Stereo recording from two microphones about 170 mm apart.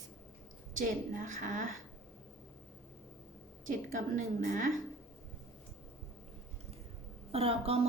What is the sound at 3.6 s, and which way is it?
A woman's voice, 50° right (ahead or behind).